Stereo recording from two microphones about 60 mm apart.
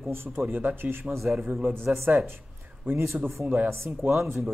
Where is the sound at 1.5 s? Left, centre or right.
Right.